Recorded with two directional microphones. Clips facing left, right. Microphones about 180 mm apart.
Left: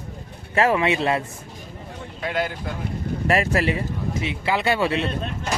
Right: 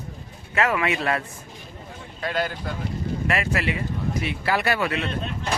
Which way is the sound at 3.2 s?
35° left (ahead or behind).